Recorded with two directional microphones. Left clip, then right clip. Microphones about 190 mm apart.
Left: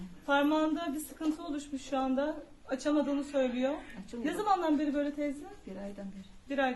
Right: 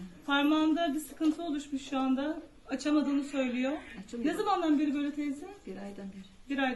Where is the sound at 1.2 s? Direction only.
20° left (ahead or behind).